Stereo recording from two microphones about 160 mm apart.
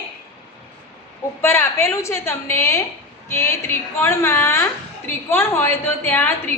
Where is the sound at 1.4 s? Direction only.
15° left (ahead or behind).